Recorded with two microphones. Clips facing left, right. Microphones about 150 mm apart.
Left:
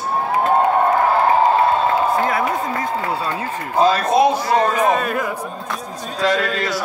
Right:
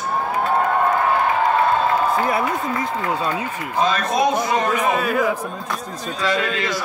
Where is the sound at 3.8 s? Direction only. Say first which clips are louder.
Left 5 dB; 35° left (ahead or behind).